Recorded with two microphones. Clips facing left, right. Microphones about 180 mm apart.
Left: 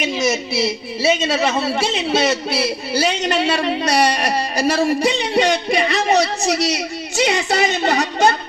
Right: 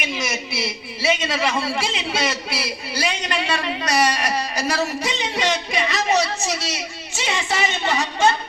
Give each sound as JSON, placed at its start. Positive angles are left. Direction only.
{"t": 0.0, "sound": "a man's voice", "side_deg": 25}